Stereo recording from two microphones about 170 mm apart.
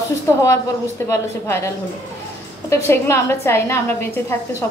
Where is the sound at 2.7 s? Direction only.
15° left (ahead or behind).